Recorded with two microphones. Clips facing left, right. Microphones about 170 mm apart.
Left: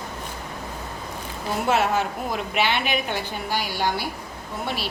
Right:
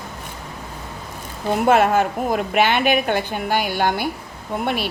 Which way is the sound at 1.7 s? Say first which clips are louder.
Right 6 dB; 50° right (ahead or behind).